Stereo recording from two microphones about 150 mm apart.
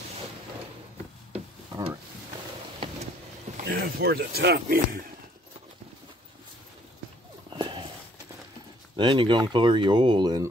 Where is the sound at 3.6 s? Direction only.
90° right.